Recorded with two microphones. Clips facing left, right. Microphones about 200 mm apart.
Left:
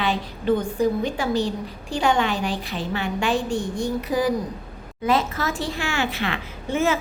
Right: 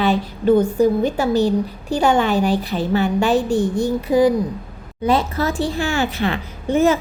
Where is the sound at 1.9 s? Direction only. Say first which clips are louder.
Right 5 dB; 40° right (ahead or behind).